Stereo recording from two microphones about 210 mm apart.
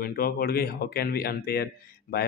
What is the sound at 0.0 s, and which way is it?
Speech, 45° left (ahead or behind).